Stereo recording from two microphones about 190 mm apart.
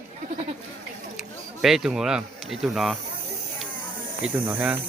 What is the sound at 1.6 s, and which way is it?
Speech, centre (ahead or behind).